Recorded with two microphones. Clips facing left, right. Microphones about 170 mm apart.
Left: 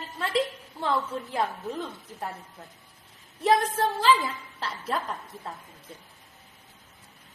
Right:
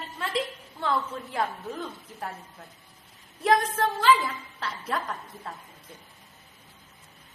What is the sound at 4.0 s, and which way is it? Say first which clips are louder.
A woman's voice: right 2 dB; 30° left (ahead or behind).